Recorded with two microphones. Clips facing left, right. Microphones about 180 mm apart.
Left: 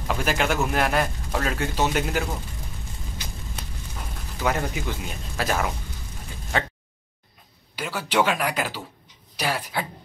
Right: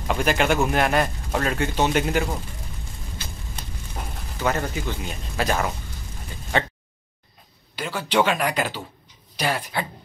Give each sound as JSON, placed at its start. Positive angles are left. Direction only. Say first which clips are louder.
{"t": 0.1, "sound": "a man's voice", "louder": "right 3 dB", "side_deg": 0}
{"t": 3.2, "sound": "a sound", "louder": "right 1 dB", "side_deg": 15}
{"t": 4.4, "sound": "a man's voice", "louder": "right 1 dB", "side_deg": 5}
{"t": 7.7, "sound": "speech", "louder": "right 2 dB", "side_deg": 10}